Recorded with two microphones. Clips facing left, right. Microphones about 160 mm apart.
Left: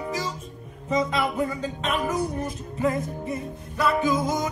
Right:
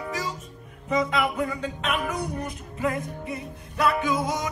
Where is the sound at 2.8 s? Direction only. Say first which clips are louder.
Left 3 dB; 30° left (ahead or behind).